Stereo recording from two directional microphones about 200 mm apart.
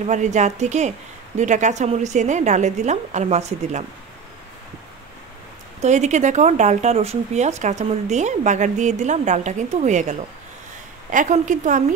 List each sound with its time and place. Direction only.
0.0 s speech: 35° right (ahead or behind)
5.8 s speech: 35° right (ahead or behind)